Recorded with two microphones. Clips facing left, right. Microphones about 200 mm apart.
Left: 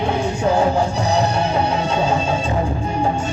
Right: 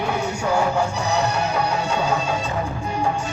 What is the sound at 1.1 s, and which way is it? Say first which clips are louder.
Music: left 3 dB; 30° left (ahead or behind).